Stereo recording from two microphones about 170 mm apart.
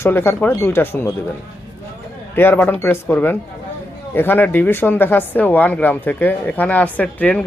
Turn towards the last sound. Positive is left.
turn(degrees=5)  # may be behind; listen again after turning